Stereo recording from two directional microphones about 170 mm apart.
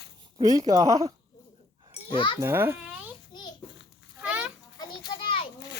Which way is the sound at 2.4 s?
15° right (ahead or behind).